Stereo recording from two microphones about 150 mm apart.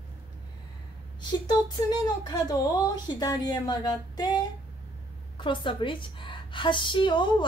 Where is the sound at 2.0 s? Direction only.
25° left (ahead or behind).